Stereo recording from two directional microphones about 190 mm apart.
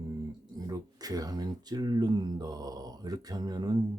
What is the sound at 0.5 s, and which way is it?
Speech, 20° right (ahead or behind).